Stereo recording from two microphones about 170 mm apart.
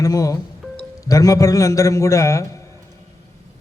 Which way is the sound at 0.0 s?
20° left (ahead or behind).